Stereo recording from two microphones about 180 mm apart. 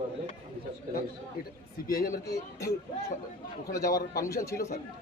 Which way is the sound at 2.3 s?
15° left (ahead or behind).